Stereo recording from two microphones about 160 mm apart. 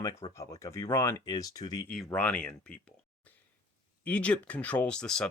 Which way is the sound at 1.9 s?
10° left (ahead or behind).